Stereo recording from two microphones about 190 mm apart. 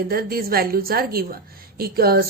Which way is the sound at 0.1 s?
55° right (ahead or behind).